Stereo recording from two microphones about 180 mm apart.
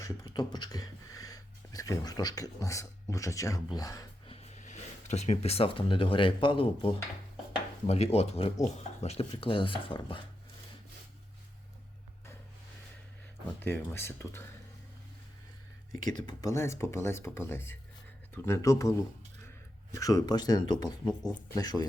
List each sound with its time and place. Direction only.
0.0 s speech: 25° left (ahead or behind)
4.3 s speech: 35° left (ahead or behind)
13.6 s speech: 10° left (ahead or behind)
15.9 s speech: 20° left (ahead or behind)